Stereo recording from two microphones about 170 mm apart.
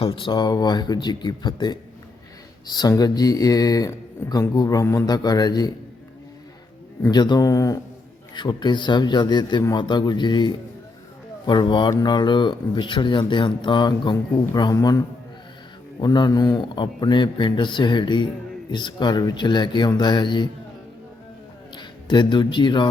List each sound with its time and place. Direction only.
0.0 s a man's voice: 30° left (ahead or behind)
7.1 s a man's voice: 25° left (ahead or behind)
21.8 s speech: 25° left (ahead or behind)